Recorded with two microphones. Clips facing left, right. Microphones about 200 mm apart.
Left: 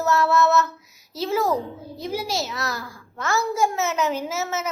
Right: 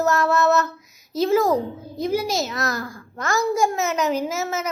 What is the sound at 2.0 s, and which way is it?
Speech, 45° right (ahead or behind).